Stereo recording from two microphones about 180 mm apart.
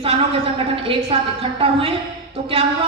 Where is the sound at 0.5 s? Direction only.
30° right (ahead or behind).